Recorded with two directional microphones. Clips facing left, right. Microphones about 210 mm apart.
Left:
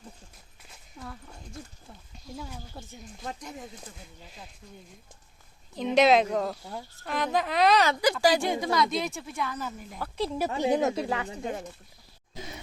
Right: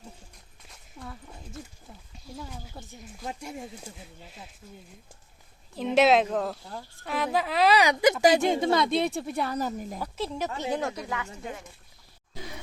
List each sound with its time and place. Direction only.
0.7 s a sound: centre (ahead or behind)
1.9 s speech: centre (ahead or behind)
5.7 s speech: 5° right (ahead or behind)
8.0 s a woman's voice: 20° right (ahead or behind); by 10.0 s 40° right (ahead or behind)
10.2 s speech: 5° left (ahead or behind); by 11.3 s 30° left (ahead or behind)